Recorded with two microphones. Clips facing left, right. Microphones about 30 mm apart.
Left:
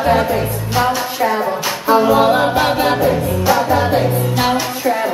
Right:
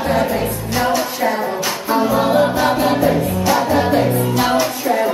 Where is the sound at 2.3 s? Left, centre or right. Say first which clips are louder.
Even; left.